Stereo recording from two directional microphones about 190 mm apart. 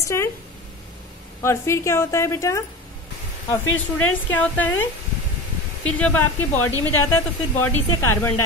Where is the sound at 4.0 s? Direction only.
10° left (ahead or behind).